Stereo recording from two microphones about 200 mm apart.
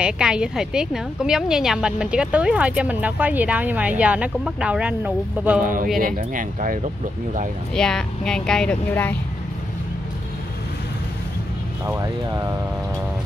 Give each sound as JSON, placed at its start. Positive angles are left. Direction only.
{"t": 0.0, "sound": "a woman's voice", "side_deg": -5}
{"t": 5.6, "sound": "speech", "side_deg": -40}
{"t": 7.7, "sound": "a woman's voice", "side_deg": 5}
{"t": 11.8, "sound": "speech", "side_deg": -15}